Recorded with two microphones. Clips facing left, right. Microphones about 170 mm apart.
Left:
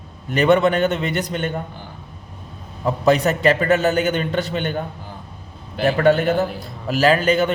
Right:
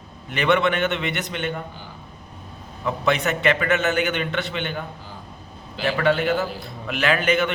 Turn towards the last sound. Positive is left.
turn(degrees=35)  # may be behind; listen again after turning